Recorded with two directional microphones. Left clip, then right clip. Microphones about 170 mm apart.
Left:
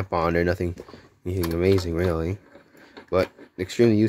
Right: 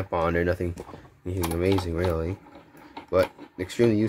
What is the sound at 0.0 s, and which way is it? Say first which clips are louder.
Speech: left 2 dB; 50° left (ahead or behind).